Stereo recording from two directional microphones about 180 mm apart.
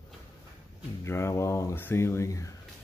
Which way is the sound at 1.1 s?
15° left (ahead or behind).